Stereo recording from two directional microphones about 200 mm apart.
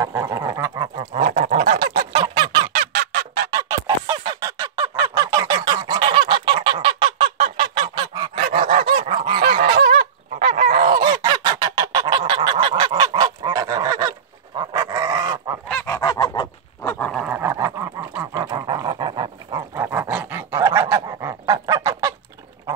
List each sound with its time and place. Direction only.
0.2 s a sound: 20° right (ahead or behind)
1.2 s goose: 45° right (ahead or behind)
2.2 s honk: 25° right (ahead or behind)
2.7 s honk: 50° right (ahead or behind)
3.5 s honk: 15° right (ahead or behind)
7.5 s goose: 25° right (ahead or behind)
9.4 s goose: 45° right (ahead or behind)
11.1 s goose: 20° right (ahead or behind)
14.6 s dog: 20° right (ahead or behind)
16.0 s goose: 20° left (ahead or behind)
16.8 s dog: 5° left (ahead or behind)
17.3 s dog: 15° right (ahead or behind)
20.9 s goose: 15° right (ahead or behind)